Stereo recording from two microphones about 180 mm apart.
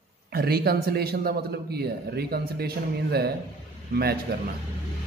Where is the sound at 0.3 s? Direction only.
60° right (ahead or behind).